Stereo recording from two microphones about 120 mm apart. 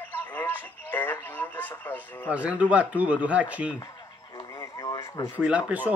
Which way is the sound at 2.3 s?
10° right (ahead or behind).